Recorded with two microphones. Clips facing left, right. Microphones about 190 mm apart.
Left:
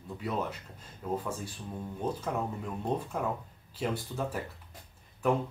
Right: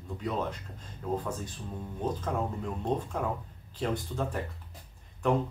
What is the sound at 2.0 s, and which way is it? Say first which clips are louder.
Speech: right 1 dB; 10° left (ahead or behind).